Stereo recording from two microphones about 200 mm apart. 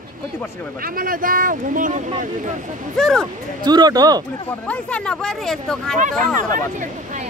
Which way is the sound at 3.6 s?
20° right (ahead or behind).